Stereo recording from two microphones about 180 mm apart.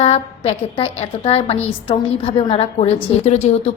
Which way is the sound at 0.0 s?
30° left (ahead or behind).